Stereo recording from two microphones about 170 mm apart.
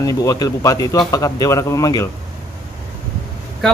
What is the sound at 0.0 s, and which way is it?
Speech, 20° left (ahead or behind).